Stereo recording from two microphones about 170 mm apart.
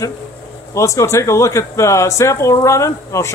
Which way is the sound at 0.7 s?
15° left (ahead or behind).